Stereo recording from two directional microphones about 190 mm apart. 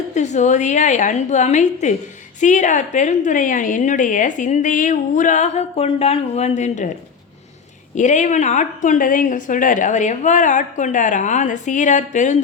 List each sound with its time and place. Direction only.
0.1 s a woman's voice: 40° left (ahead or behind)
7.9 s a woman's voice: 40° left (ahead or behind)